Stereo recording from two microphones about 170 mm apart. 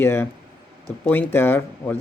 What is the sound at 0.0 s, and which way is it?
Speech, 15° left (ahead or behind).